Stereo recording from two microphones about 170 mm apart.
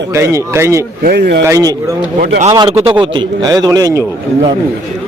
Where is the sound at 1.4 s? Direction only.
20° right (ahead or behind).